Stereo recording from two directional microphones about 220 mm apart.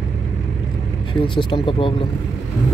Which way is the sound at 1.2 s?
20° left (ahead or behind).